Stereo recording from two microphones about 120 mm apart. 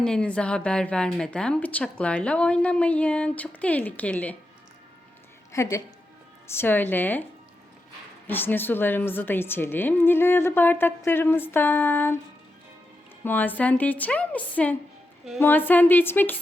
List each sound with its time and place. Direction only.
0.0 s a woman's voice: 10° left (ahead or behind)
5.5 s a woman's voice: 25° left (ahead or behind)
8.3 s a woman's voice: 15° left (ahead or behind)
13.2 s a woman's voice: 15° left (ahead or behind)